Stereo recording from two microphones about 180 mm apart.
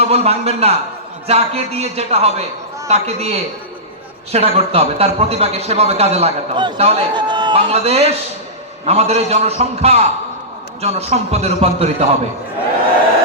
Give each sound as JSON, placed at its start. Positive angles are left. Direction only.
{"t": 0.0, "sound": "speech", "side_deg": -35}
{"t": 7.7, "sound": "speech", "side_deg": -35}